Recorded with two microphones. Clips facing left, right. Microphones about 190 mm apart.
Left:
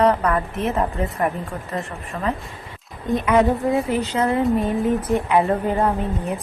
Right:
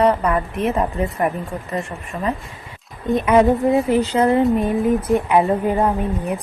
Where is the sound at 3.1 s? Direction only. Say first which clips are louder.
Right 3 dB; 20° right (ahead or behind).